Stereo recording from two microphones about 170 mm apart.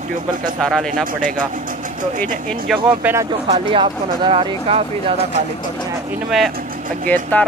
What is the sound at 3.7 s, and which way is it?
Speech, 30° right (ahead or behind).